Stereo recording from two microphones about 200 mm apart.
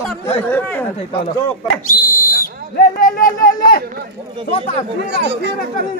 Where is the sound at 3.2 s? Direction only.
45° left (ahead or behind).